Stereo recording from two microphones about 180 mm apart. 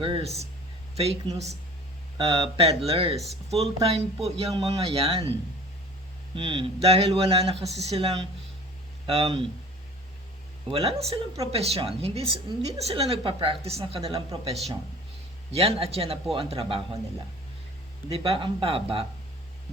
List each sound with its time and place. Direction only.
0.0 s speech: 30° right (ahead or behind)
6.3 s speech: 30° right (ahead or behind)
10.7 s speech: 35° right (ahead or behind)
15.5 s speech: 30° right (ahead or behind)
18.1 s speech: 30° right (ahead or behind)